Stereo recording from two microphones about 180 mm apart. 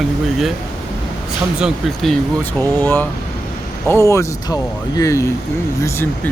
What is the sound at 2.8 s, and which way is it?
Speech, 10° left (ahead or behind).